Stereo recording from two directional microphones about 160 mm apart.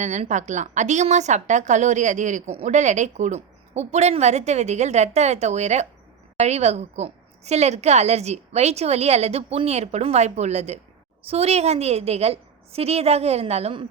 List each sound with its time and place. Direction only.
0.0 s a woman's voice: 45° right (ahead or behind)